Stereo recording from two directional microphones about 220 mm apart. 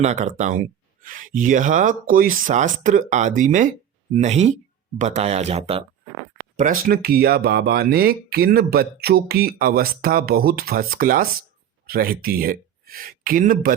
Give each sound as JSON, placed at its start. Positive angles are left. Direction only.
{"t": 0.0, "sound": "speech", "side_deg": -30}
{"t": 6.6, "sound": "speech", "side_deg": -40}